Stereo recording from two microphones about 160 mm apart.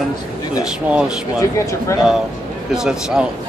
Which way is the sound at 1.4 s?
20° left (ahead or behind).